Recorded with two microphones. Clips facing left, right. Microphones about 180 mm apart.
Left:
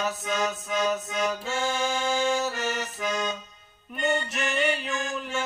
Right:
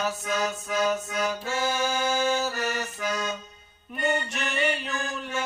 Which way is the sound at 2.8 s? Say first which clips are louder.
Left 1 dB; 20° left (ahead or behind).